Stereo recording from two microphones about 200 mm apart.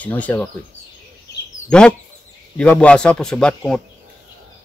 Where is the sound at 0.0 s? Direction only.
10° left (ahead or behind).